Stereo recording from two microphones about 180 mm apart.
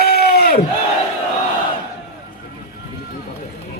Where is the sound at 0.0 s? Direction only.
55° left (ahead or behind).